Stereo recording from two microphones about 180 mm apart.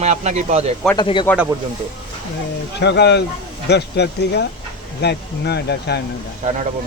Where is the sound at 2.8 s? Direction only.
70° left (ahead or behind).